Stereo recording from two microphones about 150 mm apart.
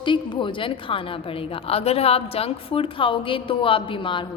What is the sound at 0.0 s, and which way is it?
A woman's voice, 30° left (ahead or behind).